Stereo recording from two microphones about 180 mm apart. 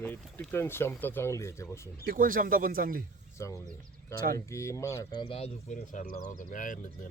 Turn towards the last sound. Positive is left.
turn(degrees=45)  # may be behind; listen again after turning